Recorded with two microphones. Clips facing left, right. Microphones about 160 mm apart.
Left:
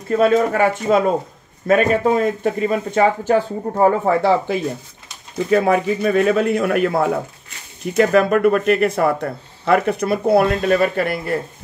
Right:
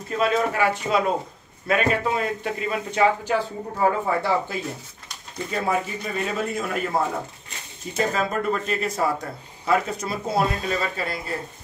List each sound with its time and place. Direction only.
0.2 s speech: 45° left (ahead or behind)
4.0 s a man's voice: 75° left (ahead or behind)